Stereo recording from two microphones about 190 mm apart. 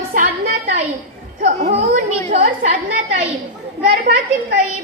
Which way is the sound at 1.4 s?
35° right (ahead or behind).